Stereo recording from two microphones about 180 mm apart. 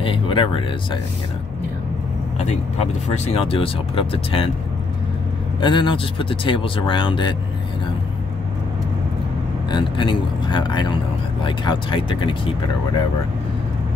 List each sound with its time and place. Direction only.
0.0 s speech: 30° left (ahead or behind)
2.4 s speech: 35° left (ahead or behind)
5.6 s speech: 25° left (ahead or behind)
9.7 s speech: 25° left (ahead or behind)